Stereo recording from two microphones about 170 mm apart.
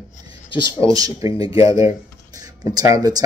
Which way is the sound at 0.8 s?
20° right (ahead or behind).